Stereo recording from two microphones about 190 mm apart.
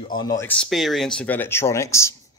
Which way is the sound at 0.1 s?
20° left (ahead or behind).